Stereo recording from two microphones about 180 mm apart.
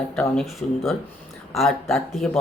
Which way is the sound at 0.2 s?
Centre (ahead or behind).